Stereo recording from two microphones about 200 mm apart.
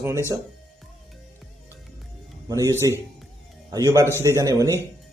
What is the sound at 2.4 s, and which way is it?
Speech, 15° right (ahead or behind).